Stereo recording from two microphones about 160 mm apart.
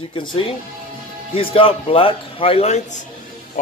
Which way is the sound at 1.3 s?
35° left (ahead or behind).